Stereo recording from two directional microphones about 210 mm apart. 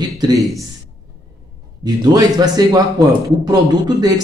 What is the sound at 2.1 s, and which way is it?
Speech, 20° right (ahead or behind).